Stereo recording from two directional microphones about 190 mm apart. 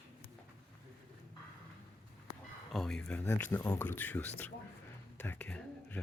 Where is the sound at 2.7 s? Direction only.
Centre (ahead or behind).